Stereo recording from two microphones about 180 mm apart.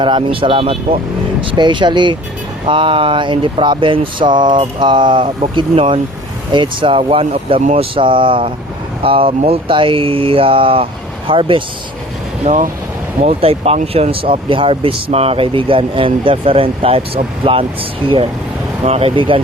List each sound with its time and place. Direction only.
0.0 s speech: 30° right (ahead or behind)